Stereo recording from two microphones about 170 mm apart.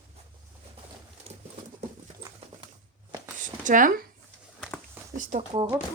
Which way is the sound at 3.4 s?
50° right (ahead or behind).